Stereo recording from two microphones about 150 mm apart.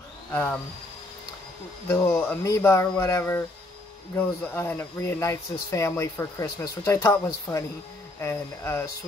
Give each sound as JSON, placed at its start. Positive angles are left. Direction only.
{"t": 0.3, "sound": "speech", "side_deg": 10}
{"t": 1.9, "sound": "speech", "side_deg": 15}